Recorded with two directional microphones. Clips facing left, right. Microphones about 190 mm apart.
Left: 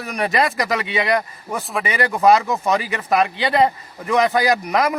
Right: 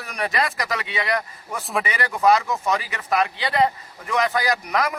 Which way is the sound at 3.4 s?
25° left (ahead or behind).